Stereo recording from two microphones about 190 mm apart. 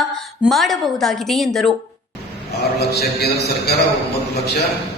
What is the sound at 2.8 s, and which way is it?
Speech, 55° left (ahead or behind).